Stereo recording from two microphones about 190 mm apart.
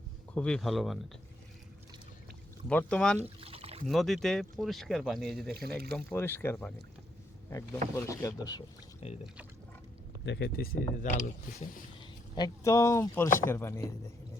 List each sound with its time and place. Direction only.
0.3 s speech: 5° left (ahead or behind)
2.6 s speech: 5° left (ahead or behind)
3.2 s pour: 30° right (ahead or behind)
3.8 s speech: centre (ahead or behind)
6.1 s speech: 10° left (ahead or behind)
7.9 s speech: 15° left (ahead or behind)
9.0 s speech: 30° left (ahead or behind)
10.2 s speech: 60° left (ahead or behind); by 11.2 s 45° left (ahead or behind)
12.4 s speech: 15° left (ahead or behind)